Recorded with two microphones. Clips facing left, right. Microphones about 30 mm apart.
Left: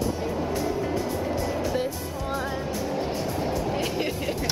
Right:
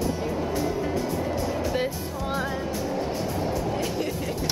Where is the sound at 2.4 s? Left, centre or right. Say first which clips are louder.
Right 1 dB; centre.